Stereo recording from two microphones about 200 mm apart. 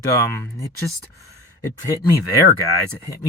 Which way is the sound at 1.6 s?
15° left (ahead or behind).